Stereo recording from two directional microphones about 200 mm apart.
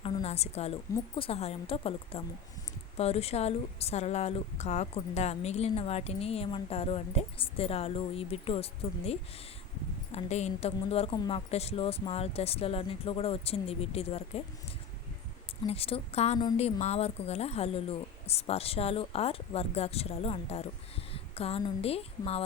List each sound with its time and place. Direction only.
0.0 s a woman's voice: 30° left (ahead or behind)
15.6 s a woman's voice: 30° left (ahead or behind)